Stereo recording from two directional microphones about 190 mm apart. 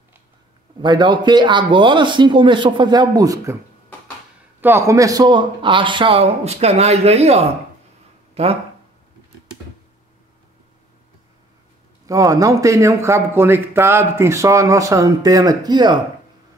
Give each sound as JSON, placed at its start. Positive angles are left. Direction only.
{"t": 0.8, "sound": "speech", "side_deg": -25}
{"t": 4.6, "sound": "speech", "side_deg": -10}
{"t": 12.1, "sound": "a man's voice", "side_deg": -20}